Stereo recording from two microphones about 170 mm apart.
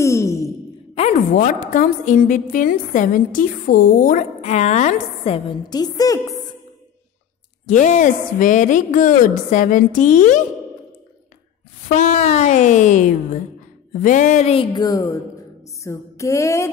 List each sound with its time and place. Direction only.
0.0 s a sound: 15° left (ahead or behind)
1.3 s a woman's voice: 50° left (ahead or behind)
4.4 s music: 40° left (ahead or behind)
5.7 s a woman's voice: 25° left (ahead or behind)
7.6 s a woman's voice: 45° left (ahead or behind)
11.9 s a woman's voice: 45° left (ahead or behind)
14.0 s music: 50° left (ahead or behind); by 15.1 s 20° left (ahead or behind)
15.8 s a sound: 20° left (ahead or behind)